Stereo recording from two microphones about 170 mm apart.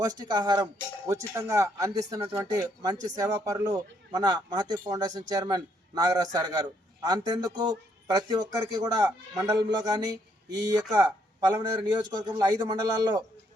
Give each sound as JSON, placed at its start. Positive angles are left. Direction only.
{"t": 0.0, "sound": "speech", "side_deg": -20}